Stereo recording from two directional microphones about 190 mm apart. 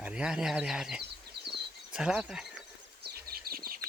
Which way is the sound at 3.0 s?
55° right (ahead or behind).